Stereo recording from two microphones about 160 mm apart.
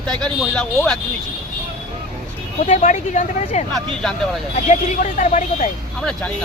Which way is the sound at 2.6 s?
50° left (ahead or behind).